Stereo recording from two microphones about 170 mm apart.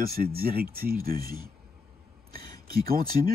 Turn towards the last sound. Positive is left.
turn(degrees=-60)  # may be behind; listen again after turning